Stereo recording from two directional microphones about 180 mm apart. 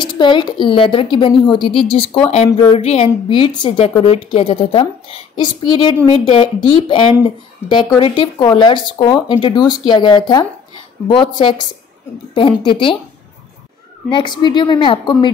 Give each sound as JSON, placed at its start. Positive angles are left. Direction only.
{"t": 0.2, "sound": "a woman's voice", "side_deg": 25}
{"t": 14.1, "sound": "a woman's voice", "side_deg": 25}